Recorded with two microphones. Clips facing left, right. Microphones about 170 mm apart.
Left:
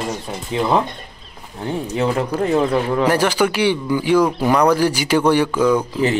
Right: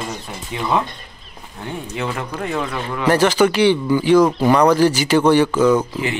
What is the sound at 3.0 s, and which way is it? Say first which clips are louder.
Speech: right 5 dB; 10° left (ahead or behind).